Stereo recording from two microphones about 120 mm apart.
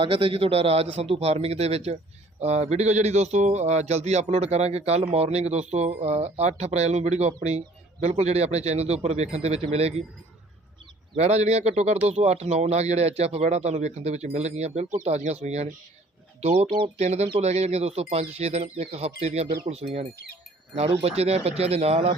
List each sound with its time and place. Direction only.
0.0 s speech: 50° right (ahead or behind)
11.2 s speech: 60° right (ahead or behind)
16.4 s speech: 60° right (ahead or behind)
17.0 s speech: 70° right (ahead or behind)